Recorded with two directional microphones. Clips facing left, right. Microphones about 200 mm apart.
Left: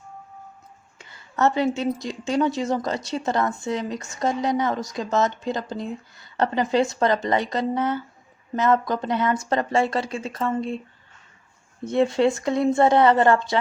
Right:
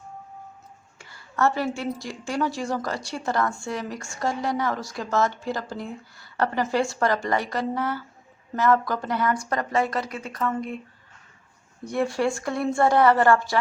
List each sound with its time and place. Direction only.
0.9 s a woman's voice: 20° left (ahead or behind)
11.9 s a woman's voice: 20° left (ahead or behind)